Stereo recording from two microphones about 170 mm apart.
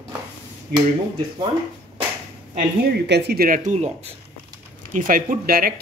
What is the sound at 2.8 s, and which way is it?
Speech, 75° right (ahead or behind).